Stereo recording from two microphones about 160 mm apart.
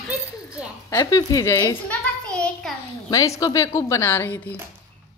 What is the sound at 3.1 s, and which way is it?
A woman's voice, 20° left (ahead or behind).